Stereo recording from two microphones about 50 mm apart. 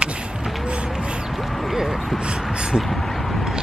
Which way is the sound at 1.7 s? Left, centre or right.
Centre.